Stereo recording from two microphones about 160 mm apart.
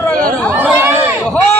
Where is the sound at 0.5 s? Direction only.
15° right (ahead or behind).